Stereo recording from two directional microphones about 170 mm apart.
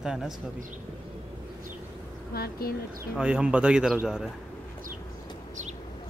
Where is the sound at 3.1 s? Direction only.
5° right (ahead or behind).